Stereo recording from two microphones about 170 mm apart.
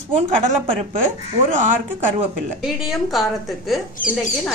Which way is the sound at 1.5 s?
45° right (ahead or behind).